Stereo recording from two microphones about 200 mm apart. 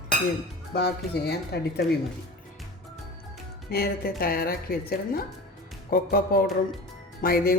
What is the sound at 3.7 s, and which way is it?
Speech, 50° left (ahead or behind).